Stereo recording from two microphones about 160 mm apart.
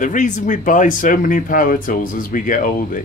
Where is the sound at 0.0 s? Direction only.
50° left (ahead or behind).